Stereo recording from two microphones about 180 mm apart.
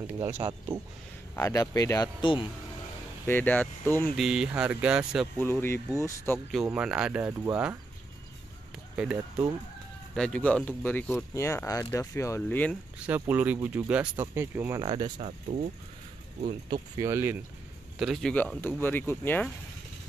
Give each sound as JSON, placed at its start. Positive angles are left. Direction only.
{"t": 0.2, "sound": "speech", "side_deg": -25}
{"t": 1.3, "sound": "speech", "side_deg": 20}
{"t": 3.3, "sound": "speech", "side_deg": 10}
{"t": 4.2, "sound": "speech", "side_deg": -5}
{"t": 5.4, "sound": "speech", "side_deg": 15}
{"t": 6.5, "sound": "speech", "side_deg": -5}
{"t": 8.9, "sound": "speech", "side_deg": -5}
{"t": 10.1, "sound": "speech", "side_deg": 5}
{"t": 13.0, "sound": "speech", "side_deg": -10}
{"t": 14.8, "sound": "speech", "side_deg": -25}
{"t": 15.1, "sound": "speech", "side_deg": -45}
{"t": 16.9, "sound": "speech", "side_deg": -15}
{"t": 17.9, "sound": "speech", "side_deg": 0}